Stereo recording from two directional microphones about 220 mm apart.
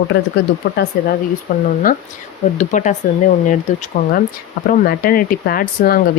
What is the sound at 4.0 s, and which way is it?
Speech, 35° left (ahead or behind).